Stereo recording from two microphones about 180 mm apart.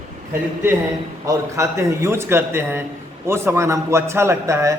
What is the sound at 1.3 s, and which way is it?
A man's voice, 15° right (ahead or behind).